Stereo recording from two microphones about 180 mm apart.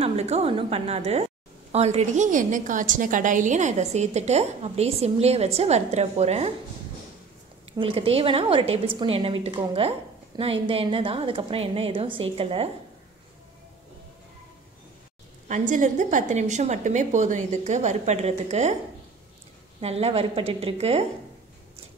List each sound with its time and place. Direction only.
0.0 s a woman's voice: 35° right (ahead or behind)
7.8 s a woman's voice: 30° right (ahead or behind)
15.4 s a woman's voice: 45° right (ahead or behind)
19.8 s a woman's voice: 35° right (ahead or behind)